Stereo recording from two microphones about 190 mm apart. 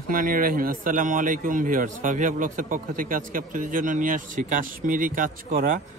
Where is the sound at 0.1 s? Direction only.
45° right (ahead or behind).